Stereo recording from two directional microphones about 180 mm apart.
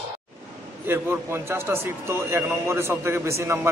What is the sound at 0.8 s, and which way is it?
A man's voice, 10° right (ahead or behind).